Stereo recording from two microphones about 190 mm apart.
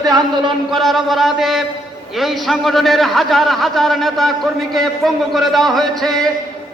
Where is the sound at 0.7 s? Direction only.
Centre (ahead or behind).